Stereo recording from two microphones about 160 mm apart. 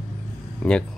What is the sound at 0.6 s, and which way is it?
Speech, 5° left (ahead or behind).